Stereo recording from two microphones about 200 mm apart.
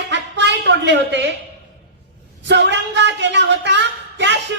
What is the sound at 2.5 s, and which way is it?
Speech, 60° right (ahead or behind).